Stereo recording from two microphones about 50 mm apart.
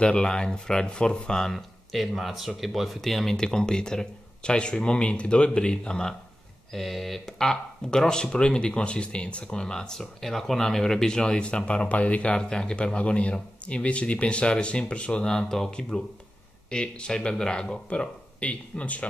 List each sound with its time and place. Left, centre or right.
0.0 s speech: centre
1.5 s speech: centre
6.7 s speech: centre; by 19.0 s left